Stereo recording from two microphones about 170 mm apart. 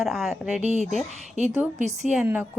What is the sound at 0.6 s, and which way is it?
A woman's voice, 40° right (ahead or behind).